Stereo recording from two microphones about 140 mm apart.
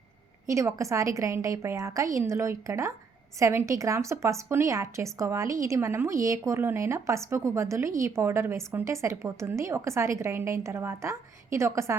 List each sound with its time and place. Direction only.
0.4 s a woman's voice: 20° right (ahead or behind)